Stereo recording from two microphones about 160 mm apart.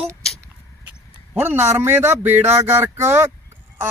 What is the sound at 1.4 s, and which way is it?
Speech, 10° right (ahead or behind).